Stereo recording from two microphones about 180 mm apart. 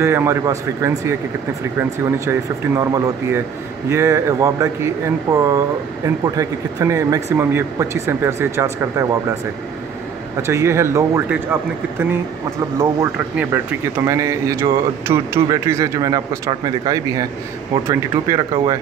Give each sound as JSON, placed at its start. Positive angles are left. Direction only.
{"t": 0.0, "sound": "speech", "side_deg": -15}
{"t": 10.4, "sound": "speech", "side_deg": -15}
{"t": 12.7, "sound": "speech", "side_deg": -15}